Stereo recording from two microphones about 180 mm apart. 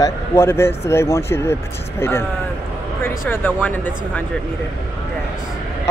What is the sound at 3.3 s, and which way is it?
Speech, 10° left (ahead or behind).